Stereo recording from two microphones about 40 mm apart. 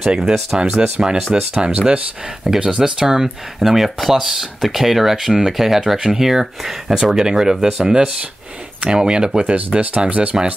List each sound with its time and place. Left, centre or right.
0.1 s speech: centre
2.4 s speech: centre
9.8 s speech: right